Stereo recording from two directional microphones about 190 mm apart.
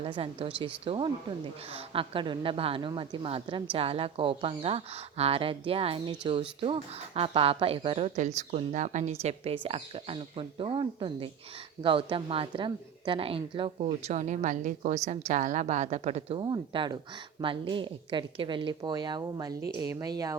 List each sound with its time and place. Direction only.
0.0 s a woman's voice: 30° right (ahead or behind)